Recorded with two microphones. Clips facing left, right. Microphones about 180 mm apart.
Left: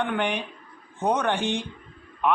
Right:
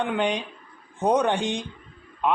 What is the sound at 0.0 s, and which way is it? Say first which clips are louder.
Speech: right 1 dB; 15° right (ahead or behind).